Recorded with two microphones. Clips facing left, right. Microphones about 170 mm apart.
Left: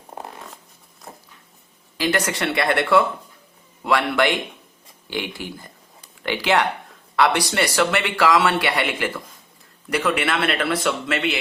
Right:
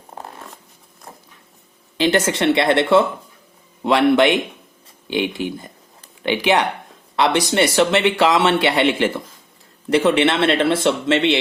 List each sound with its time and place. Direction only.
2.0 s speech: 25° right (ahead or behind)